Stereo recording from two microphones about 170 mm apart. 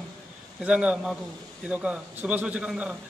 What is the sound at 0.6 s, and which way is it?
A man's voice, 5° right (ahead or behind).